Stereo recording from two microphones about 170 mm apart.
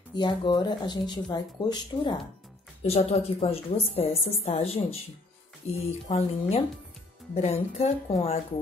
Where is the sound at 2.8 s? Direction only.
40° left (ahead or behind).